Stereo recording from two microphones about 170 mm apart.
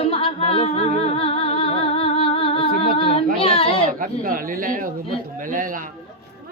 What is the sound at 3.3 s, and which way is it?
Baby cry, 35° left (ahead or behind).